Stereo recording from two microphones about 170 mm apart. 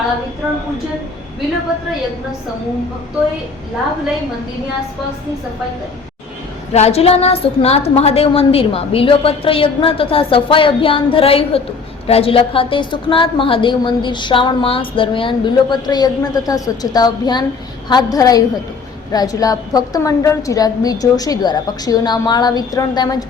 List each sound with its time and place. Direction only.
6.7 s a woman's voice: 40° left (ahead or behind); by 23.1 s 20° left (ahead or behind)